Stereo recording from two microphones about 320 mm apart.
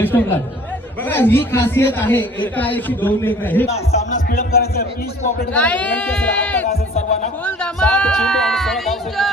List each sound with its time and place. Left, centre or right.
0.0 s speech: centre
3.7 s speech: left
5.5 s speech: centre